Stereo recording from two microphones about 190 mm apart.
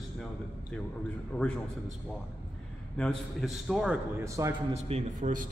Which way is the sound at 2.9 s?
5° left (ahead or behind).